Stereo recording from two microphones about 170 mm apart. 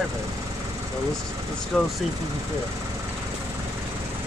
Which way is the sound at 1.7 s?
5° left (ahead or behind).